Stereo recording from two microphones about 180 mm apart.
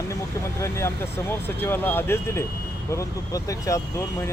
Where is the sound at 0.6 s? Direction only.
15° left (ahead or behind).